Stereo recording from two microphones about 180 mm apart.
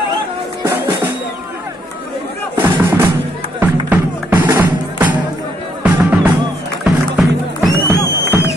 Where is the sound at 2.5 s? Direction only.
10° right (ahead or behind).